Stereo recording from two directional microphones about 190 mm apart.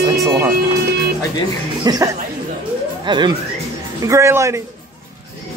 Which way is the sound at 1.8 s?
20° right (ahead or behind).